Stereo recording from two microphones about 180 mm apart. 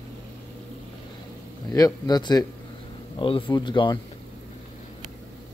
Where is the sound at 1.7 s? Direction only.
20° left (ahead or behind).